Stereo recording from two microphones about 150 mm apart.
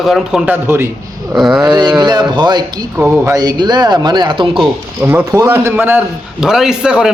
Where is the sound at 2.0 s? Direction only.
30° right (ahead or behind).